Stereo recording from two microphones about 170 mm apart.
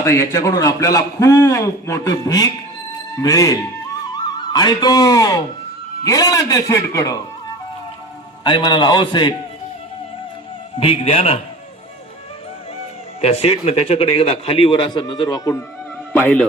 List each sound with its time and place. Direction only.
0.0 s a man's voice: 15° left (ahead or behind)
8.4 s a man's voice: 25° left (ahead or behind)
10.8 s a man's voice: 35° left (ahead or behind)
13.2 s a man's voice: 35° left (ahead or behind); by 15.6 s 20° left (ahead or behind)
16.1 s a man's voice: 10° left (ahead or behind)